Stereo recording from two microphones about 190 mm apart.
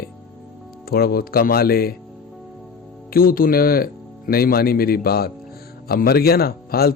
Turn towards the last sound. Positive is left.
turn(degrees=55)  # may be behind; listen again after turning